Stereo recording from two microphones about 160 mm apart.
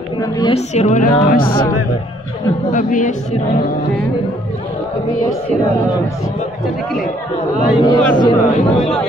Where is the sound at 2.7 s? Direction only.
55° left (ahead or behind).